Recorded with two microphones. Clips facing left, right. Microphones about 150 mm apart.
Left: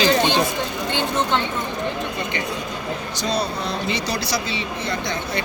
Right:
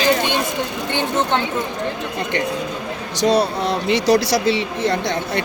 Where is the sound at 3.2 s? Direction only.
90° right.